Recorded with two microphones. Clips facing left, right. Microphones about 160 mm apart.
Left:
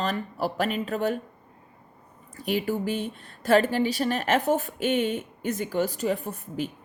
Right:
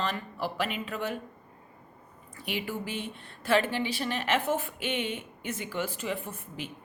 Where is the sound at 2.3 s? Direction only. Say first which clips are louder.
Left 7 dB; 40° left (ahead or behind).